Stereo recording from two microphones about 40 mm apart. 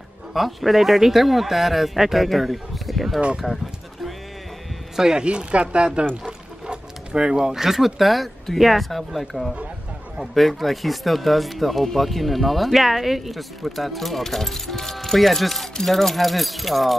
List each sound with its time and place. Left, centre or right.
0.3 s speech: centre
4.9 s speech: centre
5.2 s speech: right
6.2 s pour: centre
7.5 s speech: centre